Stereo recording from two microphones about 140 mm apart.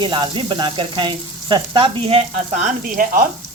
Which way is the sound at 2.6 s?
75° right (ahead or behind).